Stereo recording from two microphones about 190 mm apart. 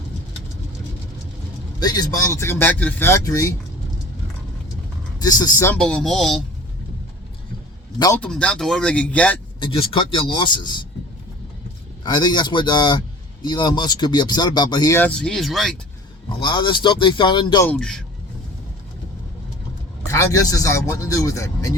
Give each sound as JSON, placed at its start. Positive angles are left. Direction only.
{"t": 1.8, "sound": "speech", "side_deg": 20}
{"t": 5.2, "sound": "speech", "side_deg": 20}
{"t": 5.8, "sound": "speech", "side_deg": 0}
{"t": 7.9, "sound": "speech", "side_deg": 20}
{"t": 8.2, "sound": "speech", "side_deg": 5}
{"t": 9.6, "sound": "speech", "side_deg": 25}
{"t": 12.0, "sound": "speech", "side_deg": 20}
{"t": 16.4, "sound": "speech", "side_deg": 25}
{"t": 17.7, "sound": "speech", "side_deg": 5}
{"t": 20.1, "sound": "speech", "side_deg": 15}